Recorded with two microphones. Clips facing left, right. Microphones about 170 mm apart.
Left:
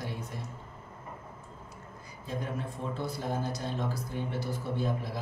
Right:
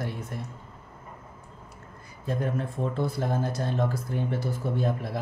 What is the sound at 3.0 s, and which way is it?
Speech, 55° right (ahead or behind).